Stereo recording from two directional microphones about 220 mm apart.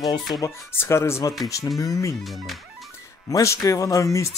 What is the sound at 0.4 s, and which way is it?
Speech, 10° left (ahead or behind).